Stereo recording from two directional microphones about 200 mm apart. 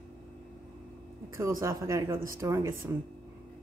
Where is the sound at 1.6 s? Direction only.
15° right (ahead or behind).